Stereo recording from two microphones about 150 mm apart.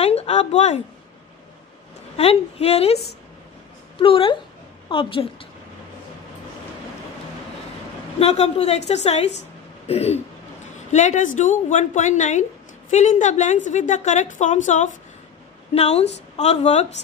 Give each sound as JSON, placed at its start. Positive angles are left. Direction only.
{"t": 0.0, "sound": "a woman's voice", "side_deg": 45}
{"t": 2.1, "sound": "a woman's voice", "side_deg": 45}
{"t": 4.0, "sound": "a woman's voice", "side_deg": 35}
{"t": 8.2, "sound": "a woman's voice", "side_deg": 45}